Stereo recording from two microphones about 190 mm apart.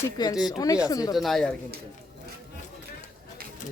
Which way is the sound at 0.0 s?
20° left (ahead or behind).